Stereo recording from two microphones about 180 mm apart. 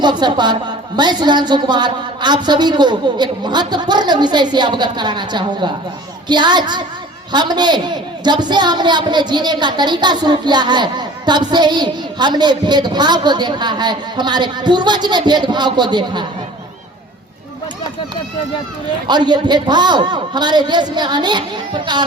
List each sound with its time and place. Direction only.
0.0 s speech: 25° right (ahead or behind)
19.0 s speech: 25° right (ahead or behind)